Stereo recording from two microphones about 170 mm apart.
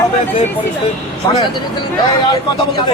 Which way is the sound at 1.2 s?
25° left (ahead or behind).